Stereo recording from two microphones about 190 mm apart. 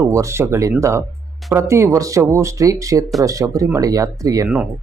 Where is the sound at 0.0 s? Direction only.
15° right (ahead or behind).